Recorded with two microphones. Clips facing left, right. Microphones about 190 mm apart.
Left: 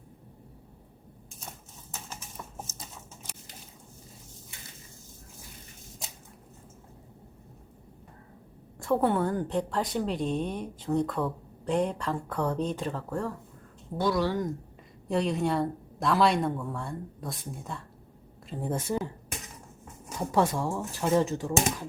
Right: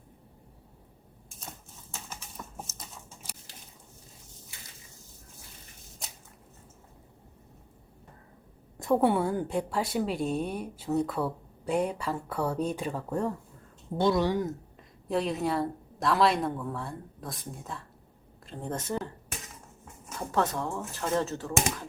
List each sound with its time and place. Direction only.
8.8 s a woman's voice: 15° right (ahead or behind)
15.0 s a woman's voice: centre (ahead or behind)
20.1 s speech: 15° left (ahead or behind)